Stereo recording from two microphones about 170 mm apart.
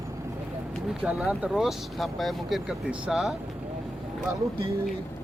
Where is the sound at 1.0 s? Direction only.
5° right (ahead or behind).